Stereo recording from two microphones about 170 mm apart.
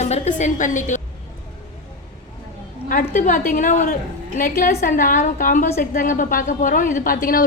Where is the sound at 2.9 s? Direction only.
50° left (ahead or behind).